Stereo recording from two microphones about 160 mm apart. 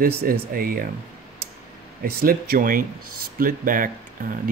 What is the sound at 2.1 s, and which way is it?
Speech, 70° right (ahead or behind).